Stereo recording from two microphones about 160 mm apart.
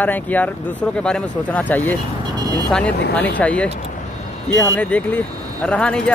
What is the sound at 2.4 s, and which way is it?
Vehicle, 25° right (ahead or behind).